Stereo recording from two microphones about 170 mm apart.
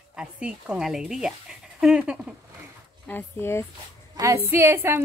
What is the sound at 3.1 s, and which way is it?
Speech, 15° left (ahead or behind).